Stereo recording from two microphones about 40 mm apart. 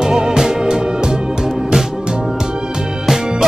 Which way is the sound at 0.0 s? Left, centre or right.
Centre.